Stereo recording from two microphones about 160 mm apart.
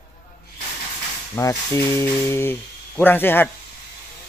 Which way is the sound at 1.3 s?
20° left (ahead or behind).